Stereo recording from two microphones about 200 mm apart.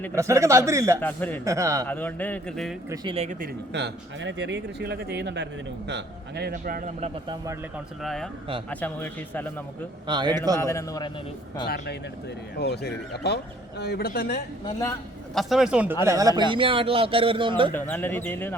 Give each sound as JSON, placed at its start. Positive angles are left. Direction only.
{"t": 0.2, "sound": "speech", "side_deg": -15}
{"t": 1.0, "sound": "speech", "side_deg": 10}
{"t": 1.5, "sound": "speech", "side_deg": -15}
{"t": 1.9, "sound": "speech", "side_deg": 10}
{"t": 2.9, "sound": "a man's voice", "side_deg": -25}
{"t": 3.7, "sound": "a man's voice", "side_deg": -60}
{"t": 6.5, "sound": "speech", "side_deg": -40}
{"t": 8.0, "sound": "a man's voice", "side_deg": 0}
{"t": 10.1, "sound": "a man's voice", "side_deg": -20}
{"t": 10.6, "sound": "speech", "side_deg": 15}
{"t": 12.5, "sound": "speech", "side_deg": 55}
{"t": 15.4, "sound": "a man's voice", "side_deg": 0}
{"t": 16.0, "sound": "a man's voice", "side_deg": -15}
{"t": 17.7, "sound": "speech", "side_deg": 10}